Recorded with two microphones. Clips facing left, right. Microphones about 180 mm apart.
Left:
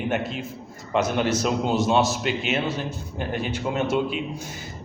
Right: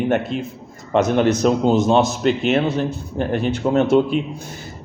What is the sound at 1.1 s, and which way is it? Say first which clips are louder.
Speech: right 7 dB; 45° right (ahead or behind).